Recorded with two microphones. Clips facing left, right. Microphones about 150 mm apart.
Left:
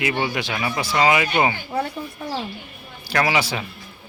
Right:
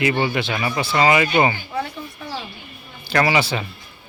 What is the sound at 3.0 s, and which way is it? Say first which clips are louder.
Speech: right 2 dB; centre (ahead or behind).